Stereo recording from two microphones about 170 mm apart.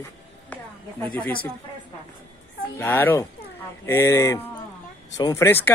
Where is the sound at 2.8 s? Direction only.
10° left (ahead or behind).